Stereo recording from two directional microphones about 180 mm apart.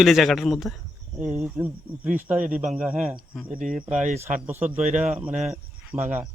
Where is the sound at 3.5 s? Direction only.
45° right (ahead or behind).